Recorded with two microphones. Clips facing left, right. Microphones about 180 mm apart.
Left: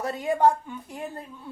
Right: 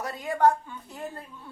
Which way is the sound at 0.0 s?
20° left (ahead or behind).